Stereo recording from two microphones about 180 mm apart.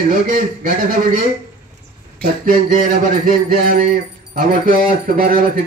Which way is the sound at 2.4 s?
45° right (ahead or behind).